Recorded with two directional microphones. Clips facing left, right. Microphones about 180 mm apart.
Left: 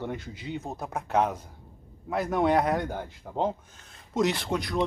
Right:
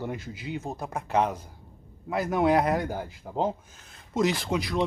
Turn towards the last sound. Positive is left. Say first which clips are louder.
# right 1 dB
turn(degrees=0)  # may be behind; listen again after turning